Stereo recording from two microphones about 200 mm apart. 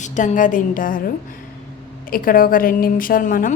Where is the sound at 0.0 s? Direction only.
40° left (ahead or behind).